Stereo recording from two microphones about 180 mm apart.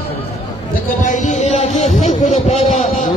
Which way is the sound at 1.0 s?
45° left (ahead or behind).